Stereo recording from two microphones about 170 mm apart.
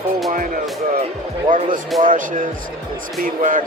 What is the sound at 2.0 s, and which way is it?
Speech, 50° right (ahead or behind).